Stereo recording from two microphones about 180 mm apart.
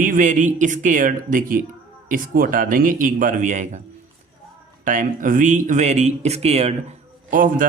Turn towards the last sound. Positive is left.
turn(degrees=-50)  # may be behind; listen again after turning